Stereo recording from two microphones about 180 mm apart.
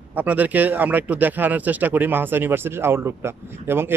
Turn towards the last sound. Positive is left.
turn(degrees=-10)  # may be behind; listen again after turning